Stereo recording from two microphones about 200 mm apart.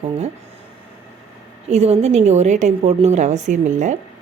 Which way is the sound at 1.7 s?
30° right (ahead or behind).